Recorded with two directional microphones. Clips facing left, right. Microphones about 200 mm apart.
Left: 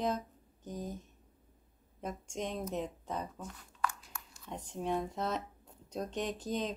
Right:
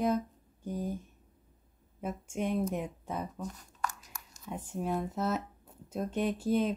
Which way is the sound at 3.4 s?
40° right (ahead or behind).